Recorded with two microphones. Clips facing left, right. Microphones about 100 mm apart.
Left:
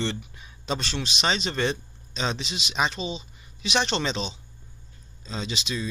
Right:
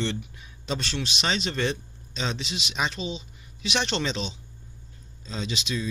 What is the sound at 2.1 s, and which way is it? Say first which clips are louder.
Speech: left 2 dB; 30° left (ahead or behind).